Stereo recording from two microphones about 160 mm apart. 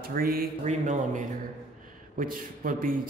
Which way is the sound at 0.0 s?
65° right (ahead or behind).